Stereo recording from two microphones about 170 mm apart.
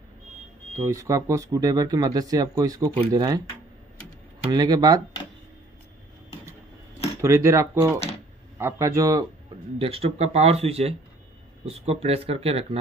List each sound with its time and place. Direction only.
0.7 s speech: 20° right (ahead or behind)
4.5 s speech: 25° right (ahead or behind)
7.2 s speech: 15° right (ahead or behind)
9.8 s speech: 35° right (ahead or behind)